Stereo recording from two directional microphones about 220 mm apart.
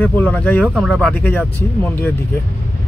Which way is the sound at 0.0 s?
5° left (ahead or behind).